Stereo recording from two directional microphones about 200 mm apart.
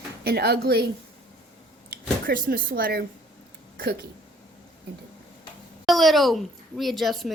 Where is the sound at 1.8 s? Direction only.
50° right (ahead or behind).